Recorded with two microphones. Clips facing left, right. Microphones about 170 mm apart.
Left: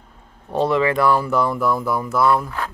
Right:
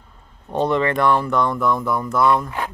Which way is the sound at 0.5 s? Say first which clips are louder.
Left 1 dB; centre (ahead or behind).